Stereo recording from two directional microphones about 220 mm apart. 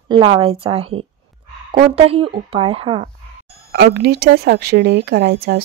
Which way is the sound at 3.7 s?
45° right (ahead or behind).